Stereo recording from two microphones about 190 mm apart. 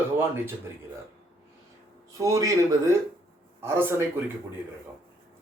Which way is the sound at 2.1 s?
15° right (ahead or behind).